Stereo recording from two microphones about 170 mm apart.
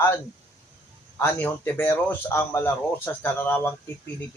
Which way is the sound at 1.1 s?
10° left (ahead or behind).